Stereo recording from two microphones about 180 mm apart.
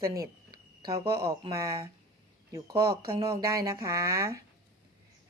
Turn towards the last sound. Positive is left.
turn(degrees=-15)  # may be behind; listen again after turning